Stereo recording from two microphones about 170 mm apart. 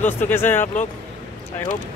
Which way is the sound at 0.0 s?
10° left (ahead or behind).